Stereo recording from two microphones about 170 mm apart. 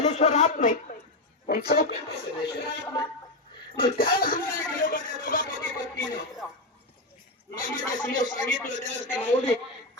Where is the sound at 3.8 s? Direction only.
60° left (ahead or behind).